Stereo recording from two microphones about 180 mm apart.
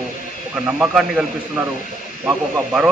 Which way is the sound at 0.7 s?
5° right (ahead or behind).